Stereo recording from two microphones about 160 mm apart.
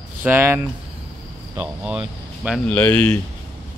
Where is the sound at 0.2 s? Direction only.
15° right (ahead or behind).